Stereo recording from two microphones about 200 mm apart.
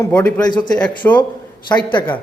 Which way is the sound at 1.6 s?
20° left (ahead or behind).